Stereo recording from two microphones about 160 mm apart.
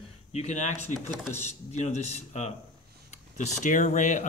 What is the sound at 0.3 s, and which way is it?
Speech, 45° left (ahead or behind).